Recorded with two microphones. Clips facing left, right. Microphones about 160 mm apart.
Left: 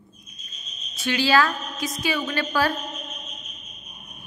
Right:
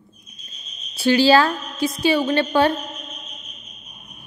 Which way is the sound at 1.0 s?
30° right (ahead or behind).